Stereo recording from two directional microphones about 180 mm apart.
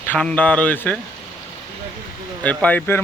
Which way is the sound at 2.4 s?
10° left (ahead or behind).